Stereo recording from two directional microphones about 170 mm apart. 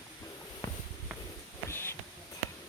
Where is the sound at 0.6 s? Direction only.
15° left (ahead or behind).